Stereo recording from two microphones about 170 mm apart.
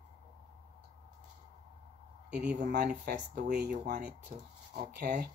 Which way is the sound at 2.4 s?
75° right (ahead or behind).